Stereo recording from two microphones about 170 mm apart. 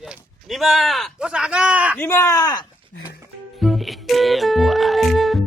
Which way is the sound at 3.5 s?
Centre (ahead or behind).